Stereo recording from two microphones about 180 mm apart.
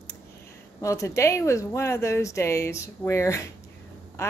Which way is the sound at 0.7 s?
15° left (ahead or behind).